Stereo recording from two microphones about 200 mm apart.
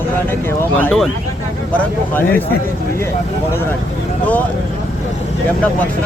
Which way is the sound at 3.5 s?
10° left (ahead or behind).